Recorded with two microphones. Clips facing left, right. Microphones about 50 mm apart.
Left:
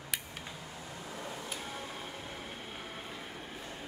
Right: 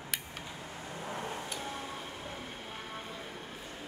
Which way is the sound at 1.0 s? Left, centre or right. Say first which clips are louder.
Right 5 dB; right.